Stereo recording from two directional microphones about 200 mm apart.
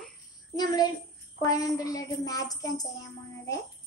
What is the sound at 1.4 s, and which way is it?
A child's voice, 15° left (ahead or behind).